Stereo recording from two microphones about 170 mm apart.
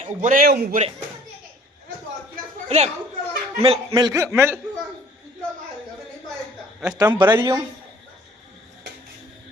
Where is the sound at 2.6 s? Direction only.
40° right (ahead or behind); by 4.6 s 15° right (ahead or behind).